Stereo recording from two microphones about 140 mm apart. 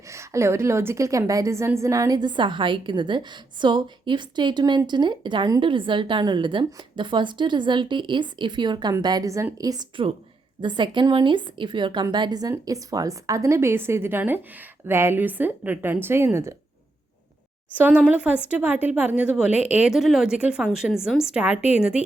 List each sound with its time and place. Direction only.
0.1 s a woman's voice: 20° right (ahead or behind)
17.7 s speech: 10° right (ahead or behind)